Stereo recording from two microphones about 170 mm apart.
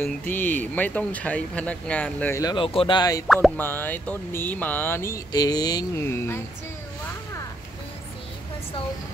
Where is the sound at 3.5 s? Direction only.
10° left (ahead or behind).